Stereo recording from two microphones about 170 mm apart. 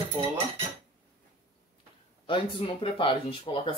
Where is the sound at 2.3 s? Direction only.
30° left (ahead or behind).